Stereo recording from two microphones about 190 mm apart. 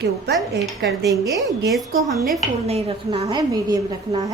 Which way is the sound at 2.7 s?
30° right (ahead or behind).